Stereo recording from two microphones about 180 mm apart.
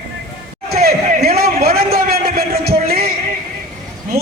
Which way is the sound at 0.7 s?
60° right (ahead or behind).